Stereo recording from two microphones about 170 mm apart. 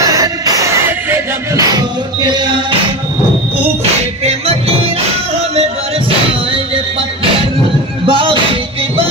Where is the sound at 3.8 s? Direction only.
40° right (ahead or behind).